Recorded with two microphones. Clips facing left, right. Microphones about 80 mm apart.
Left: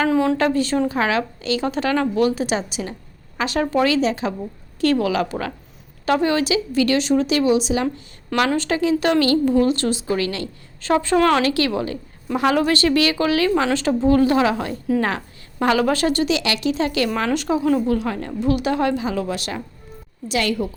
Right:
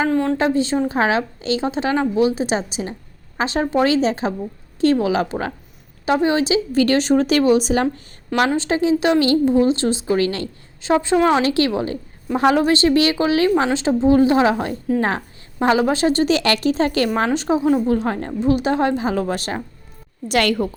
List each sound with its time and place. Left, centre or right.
0.1 s a woman's voice: centre
0.3 s a woman's voice: right
8.5 s a woman's voice: right
10.8 s a woman's voice: centre
11.5 s a woman's voice: right
16.2 s a woman's voice: right
17.2 s a woman's voice: right
20.2 s a woman's voice: right